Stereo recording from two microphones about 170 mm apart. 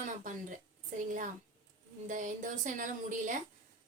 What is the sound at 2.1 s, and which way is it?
A woman's voice, 50° right (ahead or behind).